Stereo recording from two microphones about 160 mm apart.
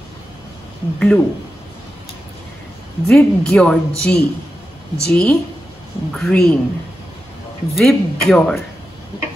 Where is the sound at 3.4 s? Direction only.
5° left (ahead or behind).